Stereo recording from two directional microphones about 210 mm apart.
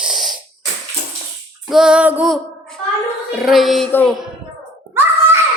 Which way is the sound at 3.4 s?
Centre (ahead or behind).